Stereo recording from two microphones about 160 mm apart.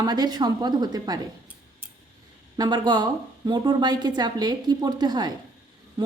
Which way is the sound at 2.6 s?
25° right (ahead or behind).